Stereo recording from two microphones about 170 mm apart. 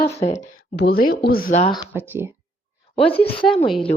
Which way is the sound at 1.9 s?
15° right (ahead or behind).